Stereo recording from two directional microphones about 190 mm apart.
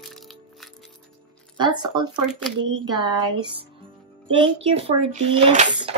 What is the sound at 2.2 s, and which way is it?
Speech, 5° right (ahead or behind).